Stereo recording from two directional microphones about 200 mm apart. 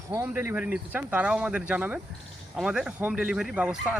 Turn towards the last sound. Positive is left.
turn(degrees=-5)  # may be behind; listen again after turning